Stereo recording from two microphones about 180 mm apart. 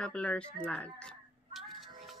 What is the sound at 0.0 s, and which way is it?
Speech, 5° left (ahead or behind).